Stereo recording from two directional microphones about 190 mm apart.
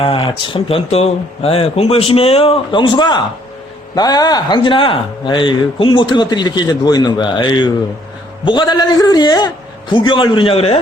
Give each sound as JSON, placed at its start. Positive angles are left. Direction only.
{"t": 0.0, "sound": "speech", "side_deg": 30}